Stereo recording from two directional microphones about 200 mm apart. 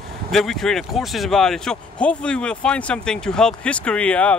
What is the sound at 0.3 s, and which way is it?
Speech, centre (ahead or behind).